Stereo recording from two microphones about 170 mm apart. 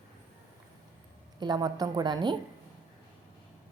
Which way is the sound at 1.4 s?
25° right (ahead or behind).